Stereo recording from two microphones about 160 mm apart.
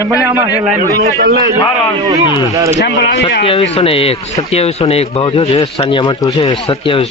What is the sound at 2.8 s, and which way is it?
Speech, 90° left.